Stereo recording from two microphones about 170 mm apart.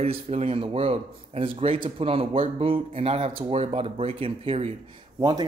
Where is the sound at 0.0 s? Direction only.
35° right (ahead or behind).